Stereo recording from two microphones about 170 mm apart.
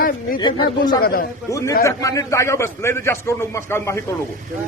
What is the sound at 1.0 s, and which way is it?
Speech, 60° left (ahead or behind).